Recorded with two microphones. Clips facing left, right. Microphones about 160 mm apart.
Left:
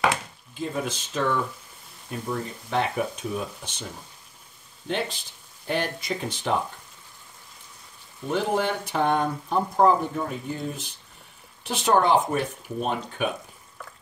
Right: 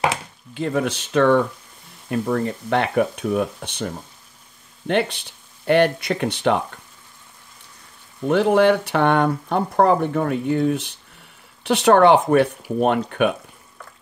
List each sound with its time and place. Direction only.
0.6 s speech: 70° right (ahead or behind)
8.3 s speech: 70° right (ahead or behind)